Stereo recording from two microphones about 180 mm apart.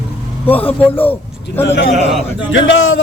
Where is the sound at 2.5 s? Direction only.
90° left.